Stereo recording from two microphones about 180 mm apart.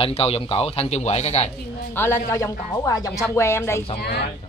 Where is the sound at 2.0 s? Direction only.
15° left (ahead or behind).